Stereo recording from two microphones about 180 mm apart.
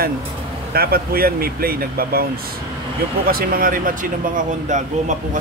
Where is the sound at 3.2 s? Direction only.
55° right (ahead or behind).